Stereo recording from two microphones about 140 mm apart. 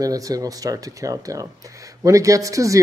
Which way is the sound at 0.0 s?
25° right (ahead or behind).